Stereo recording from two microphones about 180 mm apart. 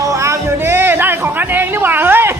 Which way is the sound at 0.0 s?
15° right (ahead or behind).